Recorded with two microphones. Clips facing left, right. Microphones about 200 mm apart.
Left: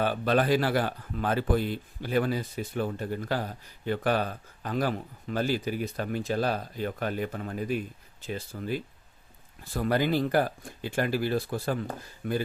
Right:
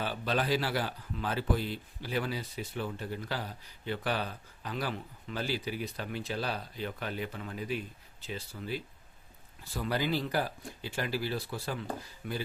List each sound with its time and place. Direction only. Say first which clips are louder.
0.0 s speech: left 7 dB; 55° left (ahead or behind)